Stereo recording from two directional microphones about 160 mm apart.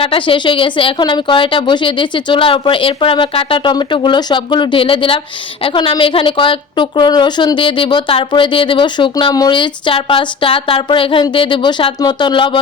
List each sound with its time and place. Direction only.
0.0 s a woman's voice: 35° left (ahead or behind)